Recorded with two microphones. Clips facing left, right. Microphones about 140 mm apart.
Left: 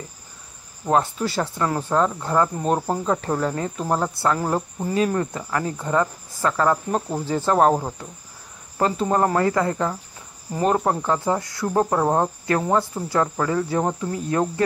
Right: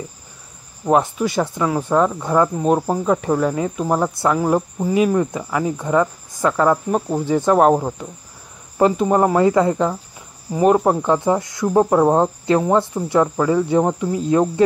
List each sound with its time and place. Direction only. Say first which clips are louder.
0.8 s speech: right 4 dB; 10° right (ahead or behind)